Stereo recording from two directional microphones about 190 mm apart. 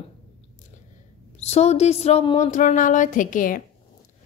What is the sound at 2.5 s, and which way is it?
A woman's voice, 40° left (ahead or behind).